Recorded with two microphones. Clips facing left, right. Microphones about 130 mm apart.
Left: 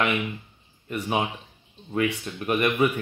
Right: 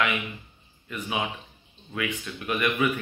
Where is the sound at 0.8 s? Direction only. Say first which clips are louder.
Left 4 dB; 40° left (ahead or behind).